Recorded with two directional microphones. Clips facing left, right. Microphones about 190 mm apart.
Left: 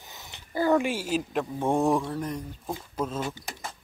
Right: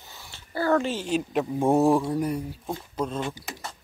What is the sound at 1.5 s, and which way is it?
Speech, 5° right (ahead or behind).